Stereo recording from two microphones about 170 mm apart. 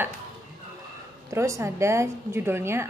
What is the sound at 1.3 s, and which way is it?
A woman's voice, 15° right (ahead or behind).